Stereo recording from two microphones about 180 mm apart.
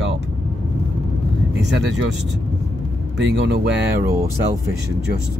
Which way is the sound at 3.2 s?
80° right.